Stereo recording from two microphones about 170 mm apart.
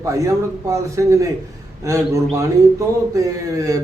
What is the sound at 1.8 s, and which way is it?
Speech, 20° right (ahead or behind).